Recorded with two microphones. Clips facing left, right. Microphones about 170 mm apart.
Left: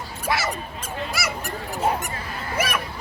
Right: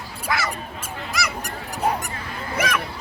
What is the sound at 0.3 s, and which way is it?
Dog, 25° left (ahead or behind).